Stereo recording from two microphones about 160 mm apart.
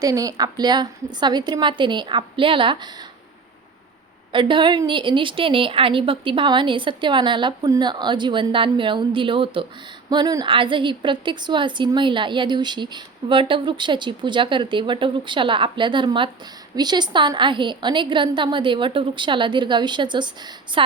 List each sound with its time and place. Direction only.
0.0 s a woman's voice: 20° right (ahead or behind)
4.3 s a woman's voice: 30° right (ahead or behind)